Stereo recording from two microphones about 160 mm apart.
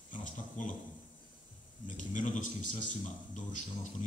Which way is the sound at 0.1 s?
55° left (ahead or behind).